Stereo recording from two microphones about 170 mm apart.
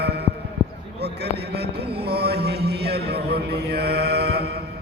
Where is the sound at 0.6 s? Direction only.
25° left (ahead or behind).